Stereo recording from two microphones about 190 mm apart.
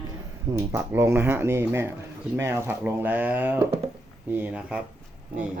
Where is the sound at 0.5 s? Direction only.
10° right (ahead or behind).